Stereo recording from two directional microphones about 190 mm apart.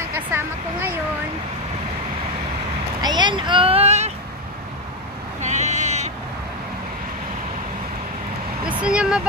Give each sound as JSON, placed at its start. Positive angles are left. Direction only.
{"t": 0.3, "sound": "speech", "side_deg": -10}
{"t": 3.0, "sound": "a sound", "side_deg": -20}
{"t": 5.4, "sound": "sheep", "side_deg": -40}
{"t": 8.6, "sound": "speech", "side_deg": -5}